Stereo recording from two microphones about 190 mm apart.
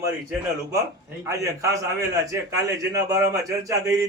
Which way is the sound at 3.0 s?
15° right (ahead or behind).